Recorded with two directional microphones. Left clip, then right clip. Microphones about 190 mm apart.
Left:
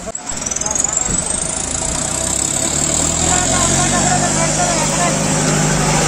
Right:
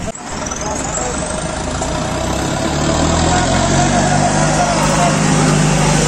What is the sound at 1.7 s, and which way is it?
Vehicle, 25° right (ahead or behind).